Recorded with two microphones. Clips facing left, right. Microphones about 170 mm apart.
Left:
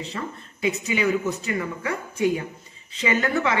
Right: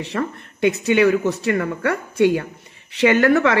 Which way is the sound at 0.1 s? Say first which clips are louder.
Right 8 dB; 75° right (ahead or behind).